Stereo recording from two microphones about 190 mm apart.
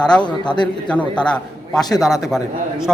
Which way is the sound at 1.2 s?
5° left (ahead or behind).